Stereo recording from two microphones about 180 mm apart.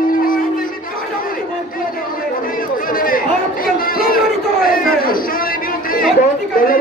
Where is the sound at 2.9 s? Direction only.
50° left (ahead or behind).